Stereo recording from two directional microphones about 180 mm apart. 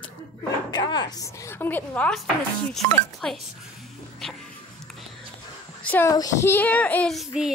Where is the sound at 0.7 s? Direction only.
25° left (ahead or behind); by 2.3 s 5° left (ahead or behind).